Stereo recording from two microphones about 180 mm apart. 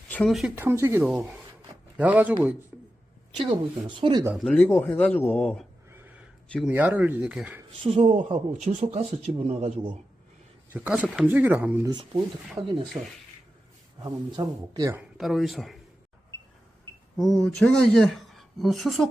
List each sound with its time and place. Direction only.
0.1 s speech: 5° left (ahead or behind)
0.5 s speech: 15° right (ahead or behind)
2.7 s a sound: 10° right (ahead or behind)
3.3 s speech: 30° right (ahead or behind)
4.4 s speech: 5° left (ahead or behind)
6.7 s speech: 10° right (ahead or behind)
7.8 s speech: 35° right (ahead or behind)
10.8 s speech: 5° right (ahead or behind)
11.9 s speech: 25° right (ahead or behind)
15.2 s speech: centre (ahead or behind)
17.2 s speech: centre (ahead or behind)